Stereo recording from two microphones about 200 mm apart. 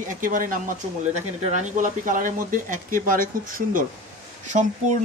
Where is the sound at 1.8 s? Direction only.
40° right (ahead or behind).